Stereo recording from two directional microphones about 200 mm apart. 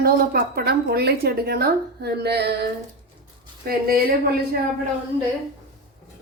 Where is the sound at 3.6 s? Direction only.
50° right (ahead or behind).